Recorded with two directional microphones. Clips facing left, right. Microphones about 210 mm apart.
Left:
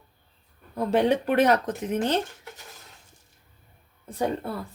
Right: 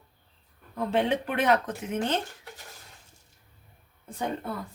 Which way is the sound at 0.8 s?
40° left (ahead or behind).